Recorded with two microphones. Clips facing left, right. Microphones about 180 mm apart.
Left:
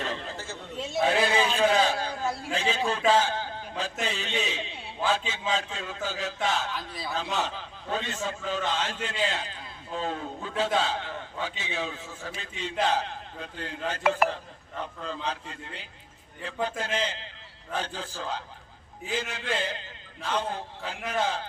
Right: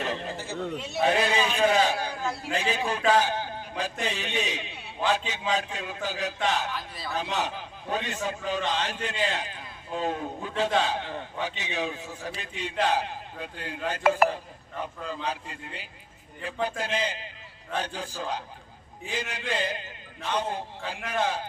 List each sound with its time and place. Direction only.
0.0 s chatter: 15° right (ahead or behind)
1.0 s a man's voice: 15° right (ahead or behind)
3.1 s a sound: 15° right (ahead or behind)
4.0 s a man's voice: 15° right (ahead or behind)
14.0 s a man's voice: centre (ahead or behind)